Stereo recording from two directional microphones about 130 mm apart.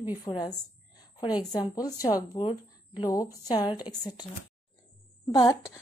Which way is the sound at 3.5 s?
30° left (ahead or behind).